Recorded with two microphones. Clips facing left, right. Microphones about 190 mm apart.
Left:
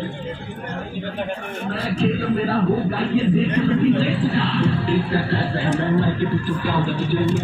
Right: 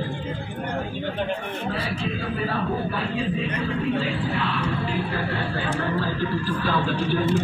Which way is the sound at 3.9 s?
30° left (ahead or behind).